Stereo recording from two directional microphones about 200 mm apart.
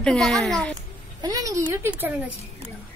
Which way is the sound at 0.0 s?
Centre (ahead or behind).